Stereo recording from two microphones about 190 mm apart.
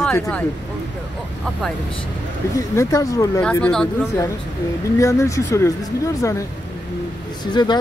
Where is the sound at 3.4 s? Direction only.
5° left (ahead or behind).